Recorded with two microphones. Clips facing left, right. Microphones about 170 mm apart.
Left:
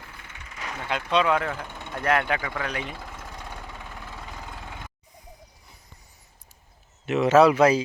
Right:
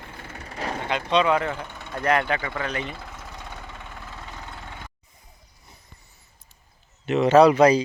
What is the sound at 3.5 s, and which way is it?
Vehicle, 10° left (ahead or behind).